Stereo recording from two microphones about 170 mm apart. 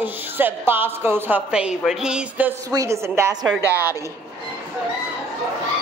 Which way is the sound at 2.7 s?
20° right (ahead or behind).